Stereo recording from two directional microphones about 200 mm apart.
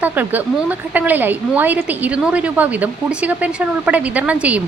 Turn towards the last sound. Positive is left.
turn(degrees=-5)  # may be behind; listen again after turning